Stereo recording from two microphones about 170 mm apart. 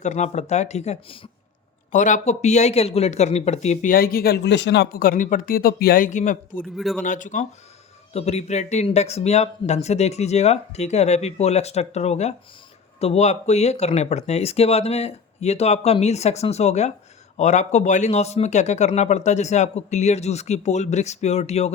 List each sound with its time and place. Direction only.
0.0 s speech: 45° left (ahead or behind)
1.9 s speech: 45° left (ahead or behind)
6.6 s a man's voice: 5° left (ahead or behind)
7.0 s speech: 50° left (ahead or behind)